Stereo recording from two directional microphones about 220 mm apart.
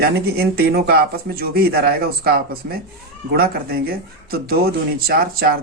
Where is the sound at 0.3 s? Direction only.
45° right (ahead or behind).